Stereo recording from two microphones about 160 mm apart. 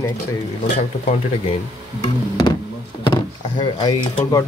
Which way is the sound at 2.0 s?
30° left (ahead or behind).